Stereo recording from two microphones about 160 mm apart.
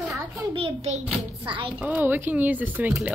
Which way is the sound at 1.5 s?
30° right (ahead or behind).